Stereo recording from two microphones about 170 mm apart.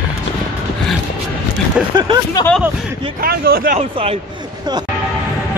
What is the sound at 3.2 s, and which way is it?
Speech, 60° right (ahead or behind).